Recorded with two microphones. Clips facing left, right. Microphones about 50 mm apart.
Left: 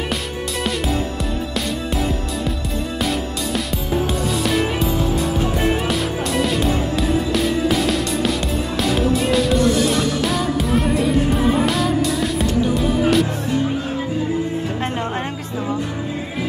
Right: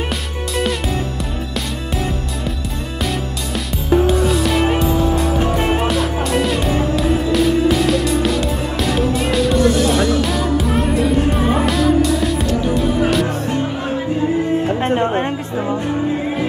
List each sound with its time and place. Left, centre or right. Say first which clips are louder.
3.5 s music: right 7 dB; centre
14.8 s music: right 6 dB; right